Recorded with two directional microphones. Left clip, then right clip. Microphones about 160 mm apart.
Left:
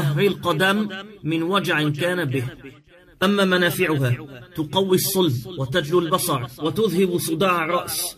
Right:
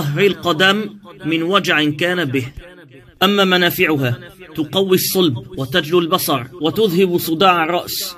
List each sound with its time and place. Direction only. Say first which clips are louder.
0.1 s speech: right 6 dB; 25° right (ahead or behind)